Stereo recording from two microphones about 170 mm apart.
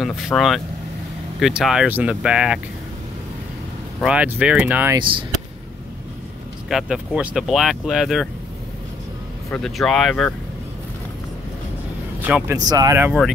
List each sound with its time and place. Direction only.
0.0 s speech: centre (ahead or behind)
4.0 s speech: 5° right (ahead or behind)
6.7 s speech: centre (ahead or behind)
9.5 s speech: centre (ahead or behind)
12.2 s a man's voice: 10° right (ahead or behind)
12.5 s speech: 20° right (ahead or behind)